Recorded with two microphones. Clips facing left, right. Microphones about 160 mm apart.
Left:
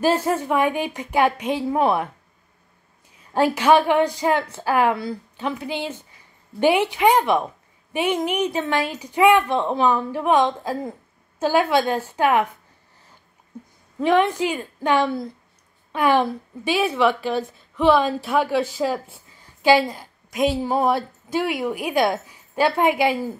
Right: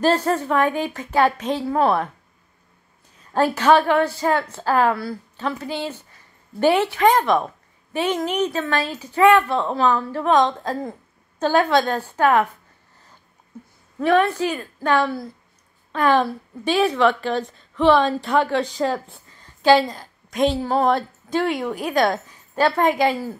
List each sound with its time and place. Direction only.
0.0 s a woman's voice: 10° left (ahead or behind)
3.3 s a woman's voice: 10° left (ahead or behind)
13.9 s a woman's voice: 20° left (ahead or behind)